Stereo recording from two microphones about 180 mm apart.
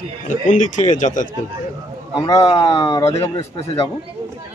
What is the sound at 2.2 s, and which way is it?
A man's voice, 20° left (ahead or behind).